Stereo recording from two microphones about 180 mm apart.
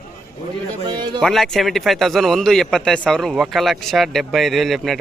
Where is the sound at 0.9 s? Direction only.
25° right (ahead or behind).